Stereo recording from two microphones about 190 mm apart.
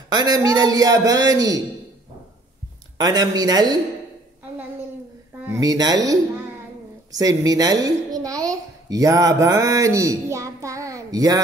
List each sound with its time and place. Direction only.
0.1 s a man's voice: 20° right (ahead or behind)
3.0 s a man's voice: 20° right (ahead or behind)
5.4 s speech: 15° right (ahead or behind)
7.1 s a woman's voice: 20° right (ahead or behind)